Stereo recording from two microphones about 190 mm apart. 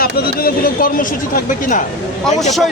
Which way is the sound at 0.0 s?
50° left (ahead or behind).